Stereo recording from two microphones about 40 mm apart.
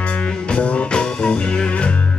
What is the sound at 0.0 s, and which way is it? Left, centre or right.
Music, left.